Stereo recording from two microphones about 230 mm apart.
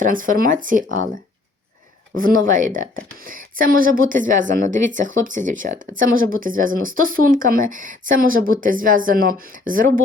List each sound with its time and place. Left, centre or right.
0.0 s speech: right
2.1 s speech: right